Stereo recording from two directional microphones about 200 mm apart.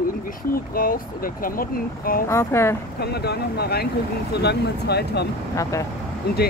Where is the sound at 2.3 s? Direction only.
15° left (ahead or behind).